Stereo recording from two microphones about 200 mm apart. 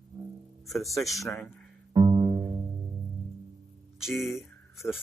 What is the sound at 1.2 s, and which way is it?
Speech, 10° left (ahead or behind).